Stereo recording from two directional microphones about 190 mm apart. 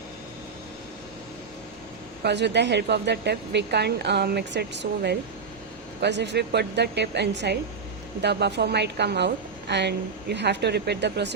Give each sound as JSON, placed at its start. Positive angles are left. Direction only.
{"t": 2.2, "sound": "a woman's voice", "side_deg": -65}